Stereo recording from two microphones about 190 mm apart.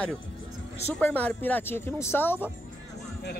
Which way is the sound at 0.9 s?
10° left (ahead or behind).